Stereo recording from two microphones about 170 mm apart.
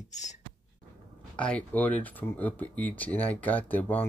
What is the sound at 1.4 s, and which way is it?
Speech, 5° left (ahead or behind).